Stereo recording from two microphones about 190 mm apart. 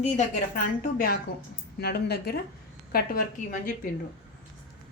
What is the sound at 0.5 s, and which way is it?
A woman's voice, 45° left (ahead or behind).